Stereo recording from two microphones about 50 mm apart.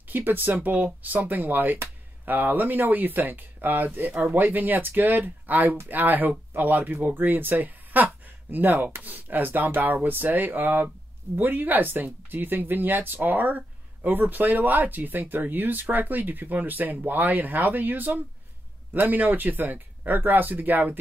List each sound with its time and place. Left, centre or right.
0.1 s speech: right